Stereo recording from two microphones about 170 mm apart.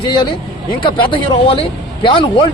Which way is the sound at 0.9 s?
30° left (ahead or behind).